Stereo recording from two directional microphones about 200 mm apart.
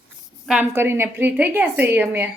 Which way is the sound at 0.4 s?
10° right (ahead or behind).